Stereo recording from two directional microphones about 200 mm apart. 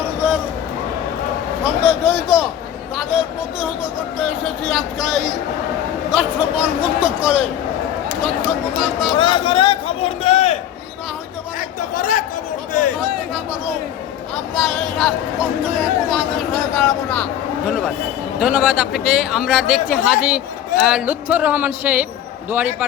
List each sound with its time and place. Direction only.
1.6 s speech: 5° right (ahead or behind)
4.2 s speech: centre (ahead or behind)
8.4 s speech: centre (ahead or behind)
9.1 s a man's voice: 25° left (ahead or behind)
11.9 s speech: 40° left (ahead or behind)
13.3 s speech: 5° right (ahead or behind)